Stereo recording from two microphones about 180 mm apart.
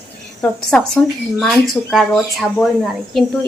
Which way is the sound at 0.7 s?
10° left (ahead or behind).